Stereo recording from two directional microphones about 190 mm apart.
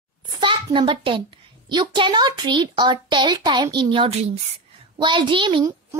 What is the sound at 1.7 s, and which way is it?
A child's voice, 25° right (ahead or behind).